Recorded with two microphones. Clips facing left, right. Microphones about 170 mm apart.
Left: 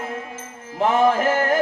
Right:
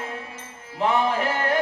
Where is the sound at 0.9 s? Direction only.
45° left (ahead or behind).